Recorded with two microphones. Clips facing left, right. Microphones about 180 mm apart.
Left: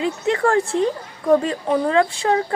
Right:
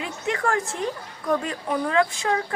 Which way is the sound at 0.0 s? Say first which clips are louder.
Left 7 dB; 30° left (ahead or behind).